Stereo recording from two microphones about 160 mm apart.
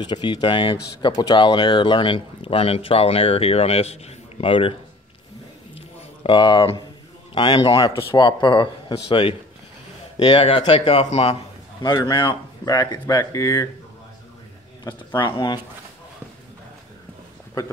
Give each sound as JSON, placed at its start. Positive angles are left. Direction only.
{"t": 0.0, "sound": "speech", "side_deg": 30}
{"t": 5.8, "sound": "a sound", "side_deg": 35}
{"t": 7.3, "sound": "speech", "side_deg": 25}
{"t": 10.2, "sound": "speech", "side_deg": 40}
{"t": 11.8, "sound": "speech", "side_deg": 25}
{"t": 15.1, "sound": "speech", "side_deg": 30}